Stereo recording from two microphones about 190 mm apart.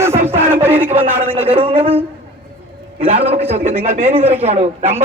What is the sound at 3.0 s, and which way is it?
A man's voice, 30° right (ahead or behind).